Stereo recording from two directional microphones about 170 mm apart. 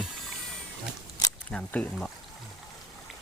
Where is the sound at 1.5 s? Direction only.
5° left (ahead or behind).